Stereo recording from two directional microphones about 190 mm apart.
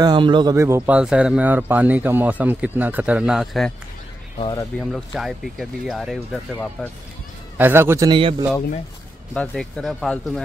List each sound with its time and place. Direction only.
0.0 s speech: 25° right (ahead or behind); by 3.7 s centre (ahead or behind)
4.4 s speech: 25° left (ahead or behind)
4.7 s speech: centre (ahead or behind)
7.5 s speech: 10° right (ahead or behind)
8.1 s speech: 25° right (ahead or behind)
9.3 s speech: 5° left (ahead or behind)